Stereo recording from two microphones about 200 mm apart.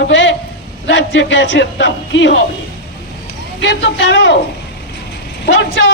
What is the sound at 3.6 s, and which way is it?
Speech, 60° left (ahead or behind).